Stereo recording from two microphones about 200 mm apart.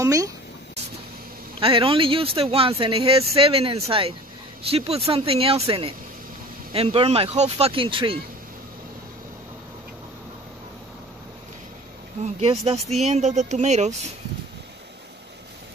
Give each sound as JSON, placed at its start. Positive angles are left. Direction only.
{"t": 0.0, "sound": "speech", "side_deg": -15}
{"t": 1.6, "sound": "speech", "side_deg": -25}
{"t": 12.4, "sound": "speech", "side_deg": -30}